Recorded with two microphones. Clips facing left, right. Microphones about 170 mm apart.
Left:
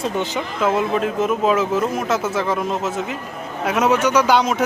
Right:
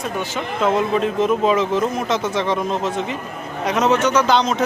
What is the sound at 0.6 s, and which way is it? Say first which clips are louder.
A man's voice: right 1 dB; 5° left (ahead or behind).